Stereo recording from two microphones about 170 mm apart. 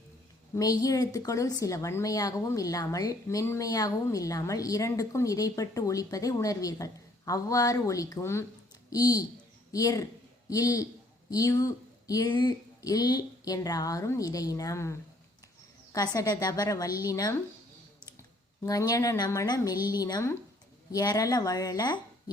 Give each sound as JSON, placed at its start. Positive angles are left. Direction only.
{"t": 0.5, "sound": "speech", "side_deg": 20}
{"t": 18.6, "sound": "speech", "side_deg": 20}